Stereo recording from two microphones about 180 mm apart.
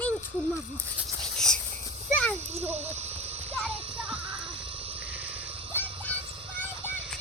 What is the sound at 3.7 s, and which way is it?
Music, 30° right (ahead or behind).